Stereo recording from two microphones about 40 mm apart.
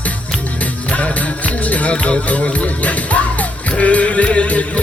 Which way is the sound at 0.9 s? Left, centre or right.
Left.